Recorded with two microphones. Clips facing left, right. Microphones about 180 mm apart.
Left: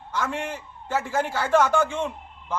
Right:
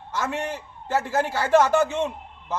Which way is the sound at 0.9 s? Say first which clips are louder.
Right 2 dB; 10° right (ahead or behind).